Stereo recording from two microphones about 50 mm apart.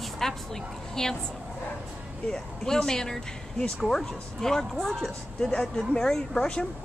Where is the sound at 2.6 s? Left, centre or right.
Centre.